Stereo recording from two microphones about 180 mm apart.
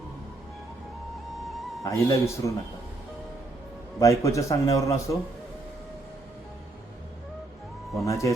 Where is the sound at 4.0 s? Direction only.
15° left (ahead or behind).